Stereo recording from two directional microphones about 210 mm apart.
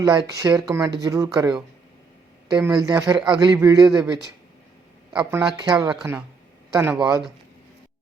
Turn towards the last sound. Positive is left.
turn(degrees=-15)  # may be behind; listen again after turning